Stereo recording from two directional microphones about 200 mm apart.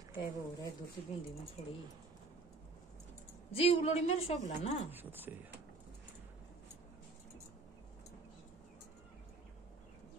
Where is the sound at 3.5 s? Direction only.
30° left (ahead or behind).